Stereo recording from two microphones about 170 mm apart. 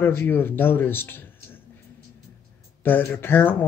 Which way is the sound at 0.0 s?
10° left (ahead or behind).